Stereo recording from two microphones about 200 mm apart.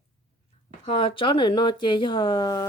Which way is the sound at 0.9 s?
25° left (ahead or behind).